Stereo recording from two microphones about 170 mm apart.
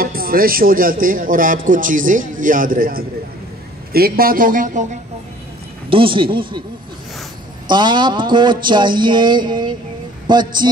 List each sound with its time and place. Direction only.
0.0 s a man's voice: 60° right (ahead or behind)
5.9 s a man's voice: 30° right (ahead or behind)
7.6 s speech: 25° right (ahead or behind)